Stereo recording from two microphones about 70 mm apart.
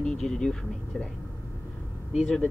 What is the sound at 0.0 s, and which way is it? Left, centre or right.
Speech, centre.